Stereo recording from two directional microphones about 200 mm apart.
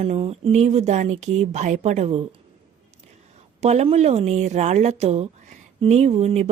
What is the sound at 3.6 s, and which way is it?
Speech, 35° right (ahead or behind).